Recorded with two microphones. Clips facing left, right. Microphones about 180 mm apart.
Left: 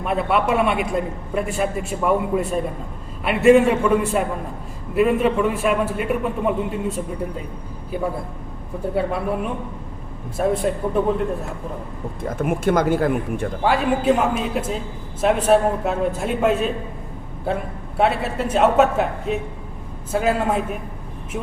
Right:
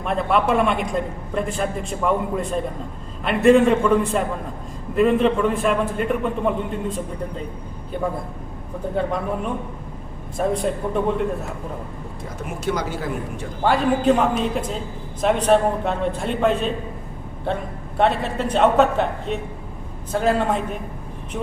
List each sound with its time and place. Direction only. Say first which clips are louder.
0.0 s a man's voice: even; 5° left (ahead or behind)
12.2 s speech: left 6 dB; 55° left (ahead or behind)
13.7 s a man's voice: right 1 dB; 5° left (ahead or behind)